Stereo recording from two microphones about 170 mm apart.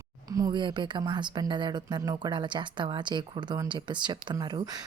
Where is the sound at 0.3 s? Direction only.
20° right (ahead or behind).